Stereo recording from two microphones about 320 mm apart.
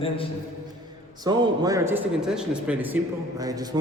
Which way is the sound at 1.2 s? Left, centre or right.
Centre.